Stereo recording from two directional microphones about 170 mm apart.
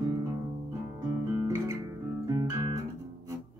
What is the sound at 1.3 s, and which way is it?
Guitar, 15° right (ahead or behind).